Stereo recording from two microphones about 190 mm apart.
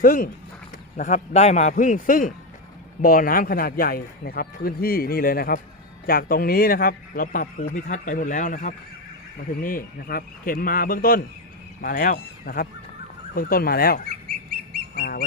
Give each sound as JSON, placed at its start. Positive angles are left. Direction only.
{"t": 0.0, "sound": "a man's voice", "side_deg": 45}
{"t": 14.9, "sound": "duck", "side_deg": 50}